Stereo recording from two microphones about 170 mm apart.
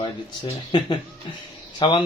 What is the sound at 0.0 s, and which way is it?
A man's voice, 30° left (ahead or behind).